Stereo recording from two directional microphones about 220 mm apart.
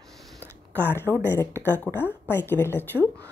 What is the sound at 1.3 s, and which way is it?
Speech, 10° left (ahead or behind).